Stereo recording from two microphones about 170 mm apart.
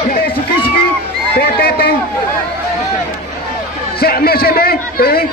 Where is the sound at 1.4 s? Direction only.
65° left (ahead or behind).